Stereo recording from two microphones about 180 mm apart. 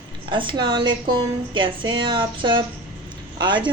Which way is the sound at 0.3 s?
25° right (ahead or behind).